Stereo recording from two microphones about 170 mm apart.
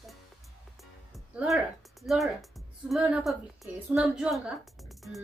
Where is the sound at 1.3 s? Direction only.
Centre (ahead or behind).